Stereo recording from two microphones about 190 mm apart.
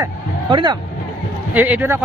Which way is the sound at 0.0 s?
25° right (ahead or behind).